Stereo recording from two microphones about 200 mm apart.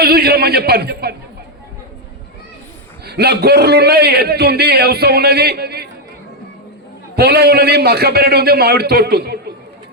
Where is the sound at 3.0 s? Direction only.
55° right (ahead or behind).